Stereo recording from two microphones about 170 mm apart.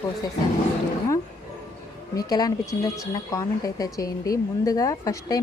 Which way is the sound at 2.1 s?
25° left (ahead or behind).